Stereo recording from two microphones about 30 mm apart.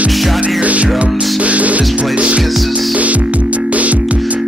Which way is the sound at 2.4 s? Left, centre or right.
Centre.